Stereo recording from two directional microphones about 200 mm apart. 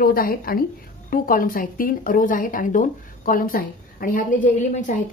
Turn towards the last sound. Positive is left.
turn(degrees=35)  # may be behind; listen again after turning